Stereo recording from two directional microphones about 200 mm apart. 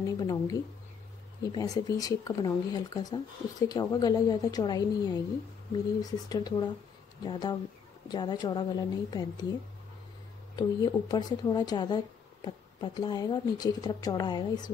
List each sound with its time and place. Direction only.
0.0 s speech: 20° left (ahead or behind)
10.5 s speech: 20° left (ahead or behind)